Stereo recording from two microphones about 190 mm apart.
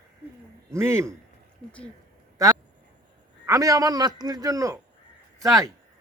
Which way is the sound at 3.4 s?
15° right (ahead or behind).